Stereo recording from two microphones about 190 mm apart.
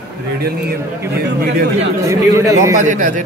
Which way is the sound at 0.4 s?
55° right (ahead or behind).